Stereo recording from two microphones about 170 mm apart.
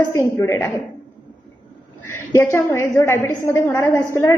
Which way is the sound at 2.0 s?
15° left (ahead or behind).